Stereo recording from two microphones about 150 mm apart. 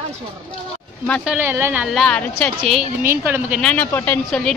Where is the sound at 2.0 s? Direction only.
10° left (ahead or behind).